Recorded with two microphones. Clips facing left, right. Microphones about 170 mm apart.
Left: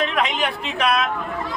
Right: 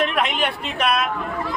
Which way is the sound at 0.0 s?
Centre (ahead or behind).